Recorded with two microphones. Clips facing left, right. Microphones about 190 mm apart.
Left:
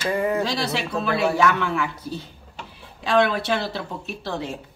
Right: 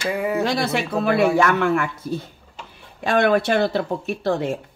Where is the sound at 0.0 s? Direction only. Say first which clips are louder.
Even; 10° right (ahead or behind).